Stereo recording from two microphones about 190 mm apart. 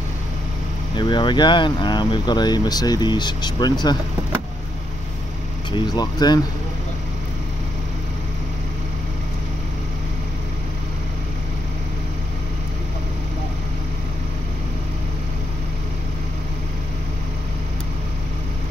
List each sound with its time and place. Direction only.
0.9 s speech: 25° left (ahead or behind)
5.7 s speech: 25° left (ahead or behind)